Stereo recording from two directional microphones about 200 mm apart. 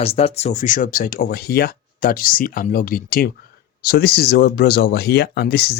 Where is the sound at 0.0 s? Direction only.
30° left (ahead or behind).